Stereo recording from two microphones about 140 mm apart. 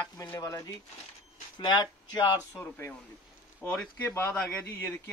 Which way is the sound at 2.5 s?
10° left (ahead or behind).